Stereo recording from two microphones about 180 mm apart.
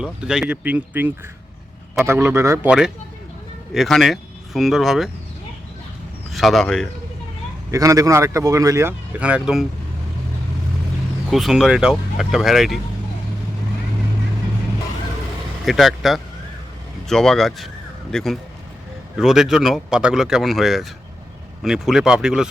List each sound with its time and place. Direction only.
0.0 s speech: 5° right (ahead or behind)
2.6 s speech: 5° right (ahead or behind)
6.3 s speech: centre (ahead or behind)
7.7 s speech: 20° right (ahead or behind); by 9.6 s centre (ahead or behind)
11.3 s speech: centre (ahead or behind)
15.6 s speech: centre (ahead or behind)